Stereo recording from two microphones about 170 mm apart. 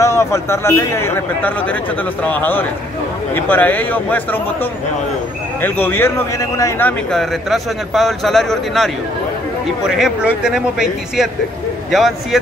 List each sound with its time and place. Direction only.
0.0 s a man's voice: 15° left (ahead or behind)
5.6 s a man's voice: 15° left (ahead or behind)